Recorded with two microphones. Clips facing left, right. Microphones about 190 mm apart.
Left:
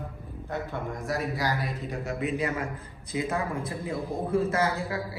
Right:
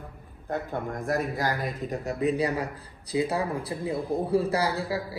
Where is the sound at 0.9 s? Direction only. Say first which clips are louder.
Right 4 dB; 55° right (ahead or behind).